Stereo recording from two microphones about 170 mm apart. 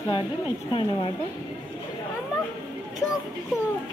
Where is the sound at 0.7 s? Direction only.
30° left (ahead or behind).